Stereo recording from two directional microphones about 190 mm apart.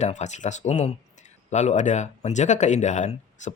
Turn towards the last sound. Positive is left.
turn(degrees=40)  # may be behind; listen again after turning